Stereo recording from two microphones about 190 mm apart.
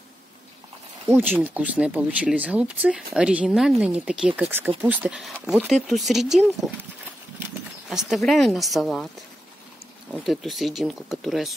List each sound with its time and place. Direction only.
1.3 s speech: 10° right (ahead or behind)
10.1 s speech: centre (ahead or behind)